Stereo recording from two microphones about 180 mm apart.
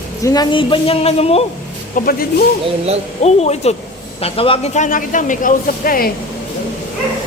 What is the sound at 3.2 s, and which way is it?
A woman's voice, 35° left (ahead or behind).